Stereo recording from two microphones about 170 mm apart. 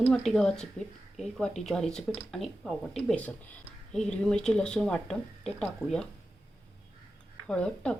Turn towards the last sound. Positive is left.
turn(degrees=5)  # may be behind; listen again after turning